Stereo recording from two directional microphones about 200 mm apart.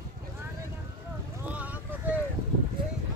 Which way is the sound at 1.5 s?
10° right (ahead or behind).